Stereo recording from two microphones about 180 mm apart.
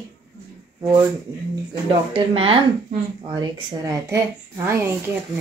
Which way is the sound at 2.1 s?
30° right (ahead or behind).